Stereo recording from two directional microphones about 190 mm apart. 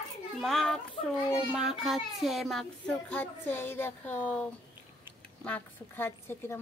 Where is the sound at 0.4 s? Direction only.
Centre (ahead or behind).